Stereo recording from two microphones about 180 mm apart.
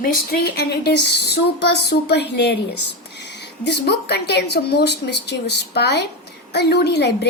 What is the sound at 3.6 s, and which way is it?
Speech, 65° left (ahead or behind).